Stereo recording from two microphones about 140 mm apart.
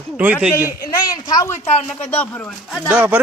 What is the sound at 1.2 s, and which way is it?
Speech, 30° left (ahead or behind).